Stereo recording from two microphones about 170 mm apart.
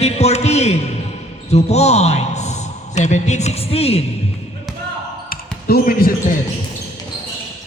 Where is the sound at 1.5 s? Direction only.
40° left (ahead or behind).